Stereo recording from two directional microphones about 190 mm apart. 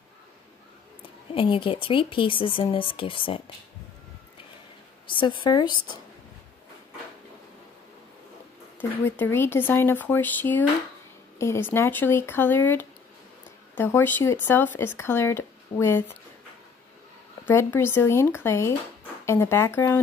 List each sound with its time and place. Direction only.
1.3 s speech: 25° left (ahead or behind)
5.0 s speech: 25° left (ahead or behind)
8.7 s speech: 10° left (ahead or behind)
17.5 s speech: 10° left (ahead or behind)